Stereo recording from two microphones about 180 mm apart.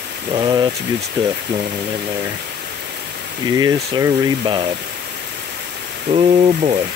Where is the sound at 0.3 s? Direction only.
25° right (ahead or behind).